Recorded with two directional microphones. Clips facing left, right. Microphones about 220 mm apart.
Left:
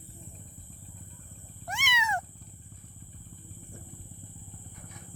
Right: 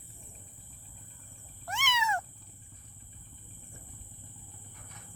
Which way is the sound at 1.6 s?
15° left (ahead or behind).